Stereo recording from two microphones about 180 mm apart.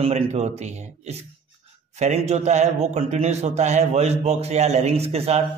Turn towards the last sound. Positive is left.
turn(degrees=-35)  # may be behind; listen again after turning